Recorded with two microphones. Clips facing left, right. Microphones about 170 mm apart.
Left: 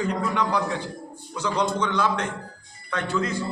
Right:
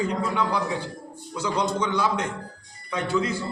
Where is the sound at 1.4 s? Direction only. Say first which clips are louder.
Left 1 dB; 10° right (ahead or behind).